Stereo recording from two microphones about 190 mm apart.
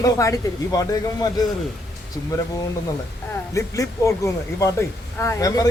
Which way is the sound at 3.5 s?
15° left (ahead or behind).